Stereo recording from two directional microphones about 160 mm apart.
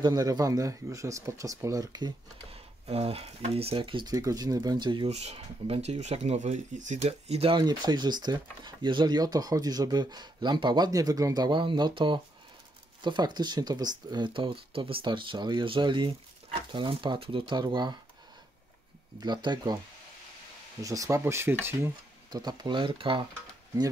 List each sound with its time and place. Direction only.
0.0 s speech: 25° right (ahead or behind)
2.5 s speech: 40° right (ahead or behind)
19.1 s speech: 30° right (ahead or behind)
20.8 s speech: 20° right (ahead or behind)
22.3 s speech: 25° right (ahead or behind)